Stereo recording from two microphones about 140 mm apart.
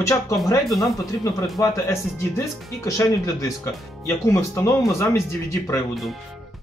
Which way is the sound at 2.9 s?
20° left (ahead or behind).